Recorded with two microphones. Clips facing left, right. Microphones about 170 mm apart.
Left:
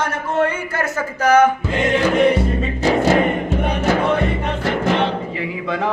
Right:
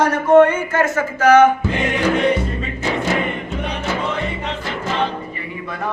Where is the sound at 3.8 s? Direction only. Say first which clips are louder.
Left 6 dB; 55° left (ahead or behind).